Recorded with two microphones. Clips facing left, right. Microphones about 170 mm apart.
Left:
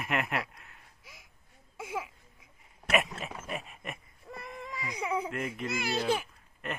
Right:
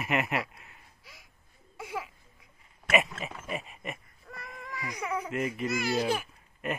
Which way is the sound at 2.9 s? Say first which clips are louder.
Right 2 dB; centre (ahead or behind).